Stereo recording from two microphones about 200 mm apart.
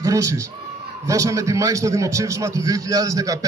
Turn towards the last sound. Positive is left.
turn(degrees=-15)  # may be behind; listen again after turning